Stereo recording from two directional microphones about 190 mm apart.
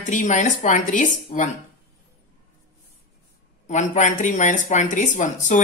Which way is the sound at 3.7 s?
40° left (ahead or behind).